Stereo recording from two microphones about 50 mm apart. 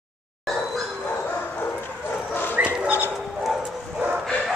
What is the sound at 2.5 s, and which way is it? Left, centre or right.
Dog, right.